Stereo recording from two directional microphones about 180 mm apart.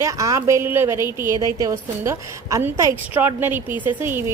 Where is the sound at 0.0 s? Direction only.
20° right (ahead or behind).